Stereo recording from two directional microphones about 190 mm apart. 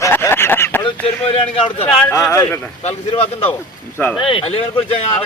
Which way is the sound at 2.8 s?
30° left (ahead or behind).